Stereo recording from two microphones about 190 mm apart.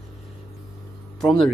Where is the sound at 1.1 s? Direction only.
Centre (ahead or behind).